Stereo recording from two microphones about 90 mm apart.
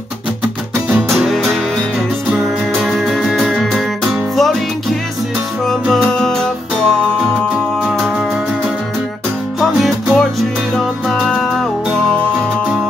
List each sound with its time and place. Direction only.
1.1 s music: centre (ahead or behind)
6.2 s music: 5° left (ahead or behind)
9.6 s music: 5° right (ahead or behind)